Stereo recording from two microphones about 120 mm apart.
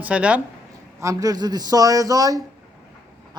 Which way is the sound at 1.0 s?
30° right (ahead or behind).